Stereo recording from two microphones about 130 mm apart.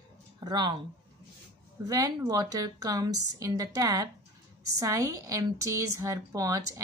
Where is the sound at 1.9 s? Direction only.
30° right (ahead or behind).